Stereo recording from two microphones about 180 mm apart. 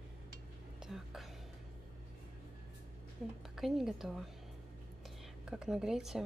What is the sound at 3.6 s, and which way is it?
Speech, centre (ahead or behind).